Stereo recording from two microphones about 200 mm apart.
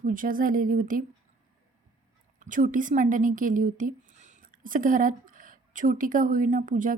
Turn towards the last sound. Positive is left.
turn(degrees=-40)  # may be behind; listen again after turning